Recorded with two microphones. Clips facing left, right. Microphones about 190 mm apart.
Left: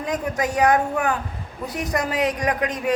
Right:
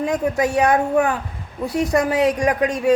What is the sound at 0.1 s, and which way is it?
A woman's voice, 25° right (ahead or behind).